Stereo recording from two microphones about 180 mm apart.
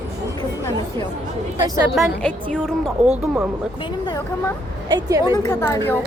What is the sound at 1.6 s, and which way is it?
Speech, 20° right (ahead or behind).